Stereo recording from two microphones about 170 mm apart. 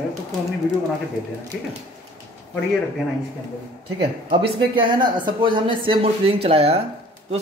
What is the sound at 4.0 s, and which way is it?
Speech, 35° right (ahead or behind).